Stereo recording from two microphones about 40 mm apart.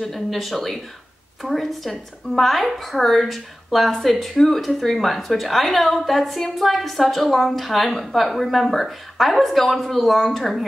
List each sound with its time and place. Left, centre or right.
0.0 s a woman's voice: centre